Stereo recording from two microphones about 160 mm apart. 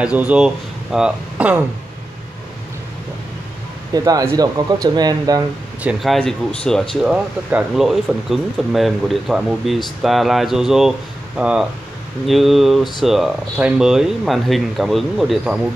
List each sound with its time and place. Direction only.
0.0 s speech: 10° right (ahead or behind)
3.9 s speech: 25° right (ahead or behind)
5.8 s speech: 5° right (ahead or behind)